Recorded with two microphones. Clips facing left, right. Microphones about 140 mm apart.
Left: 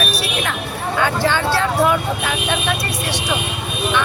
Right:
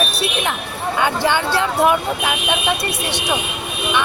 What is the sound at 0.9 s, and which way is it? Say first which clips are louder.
Speech: even; 20° right (ahead or behind).